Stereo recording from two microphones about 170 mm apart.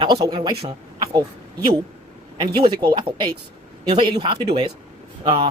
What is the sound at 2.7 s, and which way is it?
Speech, 25° right (ahead or behind).